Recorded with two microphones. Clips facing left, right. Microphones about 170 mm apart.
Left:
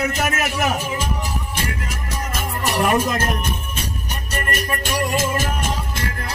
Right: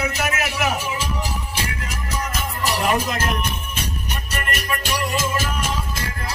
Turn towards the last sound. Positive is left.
turn(degrees=50)  # may be behind; listen again after turning